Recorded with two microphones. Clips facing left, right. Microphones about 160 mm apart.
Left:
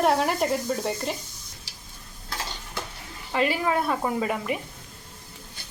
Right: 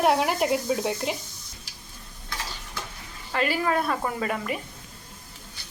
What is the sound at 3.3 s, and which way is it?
Speech, 20° left (ahead or behind).